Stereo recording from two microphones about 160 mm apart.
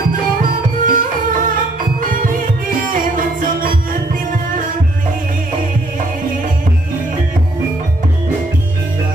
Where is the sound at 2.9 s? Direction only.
55° right (ahead or behind).